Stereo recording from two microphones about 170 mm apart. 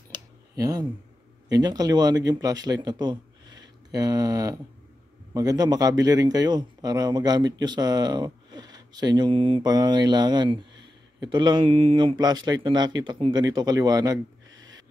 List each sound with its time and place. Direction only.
0.6 s a man's voice: 20° right (ahead or behind)